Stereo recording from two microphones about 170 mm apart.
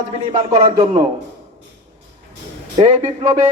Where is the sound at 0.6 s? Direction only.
45° right (ahead or behind).